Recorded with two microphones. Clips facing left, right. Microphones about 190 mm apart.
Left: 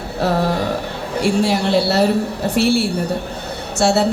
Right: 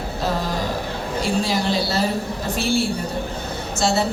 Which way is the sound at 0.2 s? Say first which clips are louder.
Left 7 dB; 65° left (ahead or behind).